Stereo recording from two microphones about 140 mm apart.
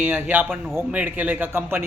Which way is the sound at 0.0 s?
10° right (ahead or behind).